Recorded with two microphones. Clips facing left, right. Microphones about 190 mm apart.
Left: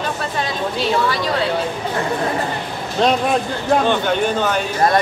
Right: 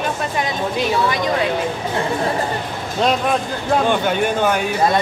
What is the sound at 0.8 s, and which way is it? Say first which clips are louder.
Speech: even; 20° right (ahead or behind).